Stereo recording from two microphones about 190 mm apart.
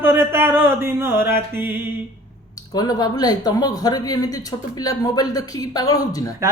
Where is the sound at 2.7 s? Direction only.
20° left (ahead or behind).